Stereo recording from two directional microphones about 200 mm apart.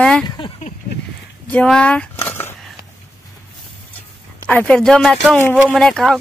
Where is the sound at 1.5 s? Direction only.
5° left (ahead or behind).